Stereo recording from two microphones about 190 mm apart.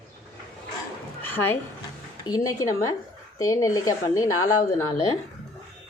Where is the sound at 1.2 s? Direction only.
10° left (ahead or behind).